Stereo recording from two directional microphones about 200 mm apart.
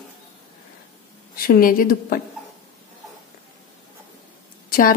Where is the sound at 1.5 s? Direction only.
45° left (ahead or behind).